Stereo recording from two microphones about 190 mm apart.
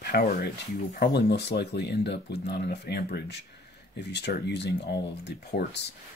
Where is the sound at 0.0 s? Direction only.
55° left (ahead or behind).